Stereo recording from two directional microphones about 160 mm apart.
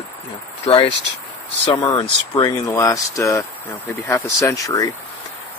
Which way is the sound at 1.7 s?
30° left (ahead or behind).